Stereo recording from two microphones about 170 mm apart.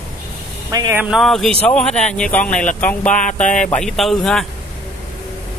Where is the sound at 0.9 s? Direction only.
Centre (ahead or behind).